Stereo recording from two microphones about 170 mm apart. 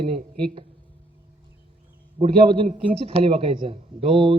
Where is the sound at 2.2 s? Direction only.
30° right (ahead or behind).